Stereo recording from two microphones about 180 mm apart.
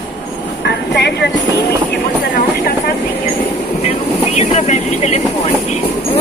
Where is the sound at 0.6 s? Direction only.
70° left (ahead or behind).